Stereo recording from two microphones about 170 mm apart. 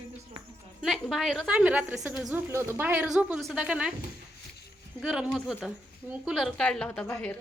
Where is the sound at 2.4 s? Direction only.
15° right (ahead or behind).